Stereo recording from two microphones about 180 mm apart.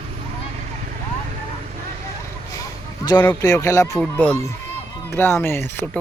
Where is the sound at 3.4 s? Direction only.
20° left (ahead or behind).